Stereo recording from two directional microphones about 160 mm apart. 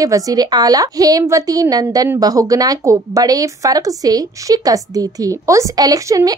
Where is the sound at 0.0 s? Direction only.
20° right (ahead or behind).